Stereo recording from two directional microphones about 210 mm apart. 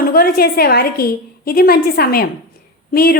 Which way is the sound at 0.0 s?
45° left (ahead or behind).